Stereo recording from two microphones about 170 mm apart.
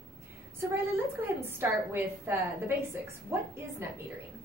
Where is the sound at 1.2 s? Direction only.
15° right (ahead or behind).